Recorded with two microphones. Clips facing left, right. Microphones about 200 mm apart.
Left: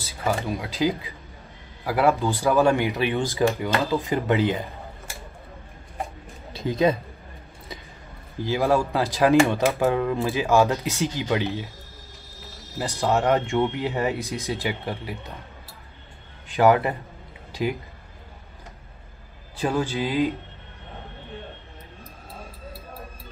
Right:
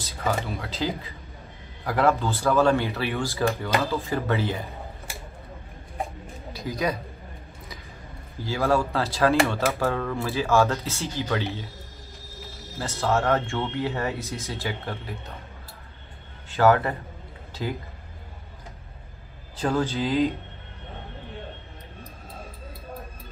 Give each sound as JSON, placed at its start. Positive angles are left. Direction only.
{"t": 0.0, "sound": "speech", "side_deg": 10}
{"t": 6.5, "sound": "a man's voice", "side_deg": 25}
{"t": 8.5, "sound": "speech", "side_deg": 15}
{"t": 12.7, "sound": "speech", "side_deg": 15}
{"t": 16.4, "sound": "a man's voice", "side_deg": 15}
{"t": 19.5, "sound": "speech", "side_deg": 15}